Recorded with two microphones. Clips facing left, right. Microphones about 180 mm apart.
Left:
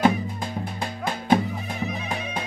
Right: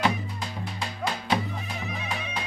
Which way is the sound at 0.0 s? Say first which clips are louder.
Left 6 dB; 50° left (ahead or behind).